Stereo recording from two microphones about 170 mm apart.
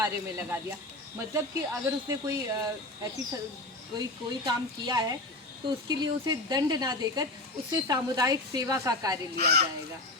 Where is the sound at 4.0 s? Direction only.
25° right (ahead or behind).